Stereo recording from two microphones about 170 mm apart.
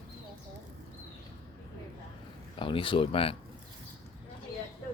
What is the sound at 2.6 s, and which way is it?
Speech, 30° left (ahead or behind).